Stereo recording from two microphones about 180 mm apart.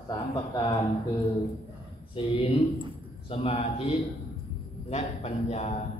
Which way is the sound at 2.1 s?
30° left (ahead or behind).